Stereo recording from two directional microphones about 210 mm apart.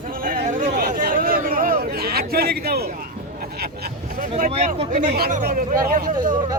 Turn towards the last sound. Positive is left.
turn(degrees=-40)  # may be behind; listen again after turning